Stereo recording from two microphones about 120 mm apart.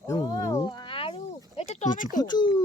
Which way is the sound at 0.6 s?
45° left (ahead or behind).